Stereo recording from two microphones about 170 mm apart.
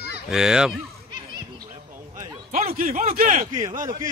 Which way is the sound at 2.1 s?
20° right (ahead or behind).